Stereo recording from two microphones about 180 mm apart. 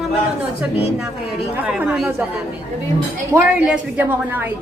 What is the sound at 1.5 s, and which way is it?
Speech, 5° right (ahead or behind).